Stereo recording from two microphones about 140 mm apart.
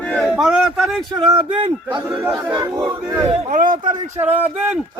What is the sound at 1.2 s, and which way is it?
Speech, 35° right (ahead or behind).